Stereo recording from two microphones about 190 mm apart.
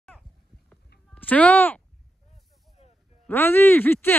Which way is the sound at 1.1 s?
10° left (ahead or behind).